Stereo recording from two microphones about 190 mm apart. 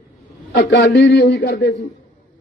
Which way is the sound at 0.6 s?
60° left (ahead or behind).